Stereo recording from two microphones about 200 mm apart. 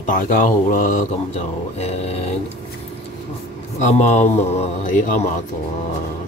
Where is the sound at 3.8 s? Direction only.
35° left (ahead or behind).